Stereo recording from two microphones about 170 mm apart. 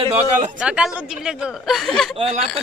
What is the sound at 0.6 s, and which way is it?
Speech, 5° right (ahead or behind).